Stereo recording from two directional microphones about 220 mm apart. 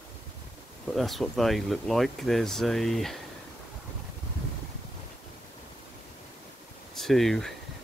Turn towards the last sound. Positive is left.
turn(degrees=0)  # may be behind; listen again after turning